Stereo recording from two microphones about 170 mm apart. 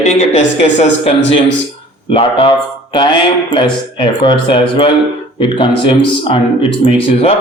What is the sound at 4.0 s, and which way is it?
A man's voice, 30° left (ahead or behind).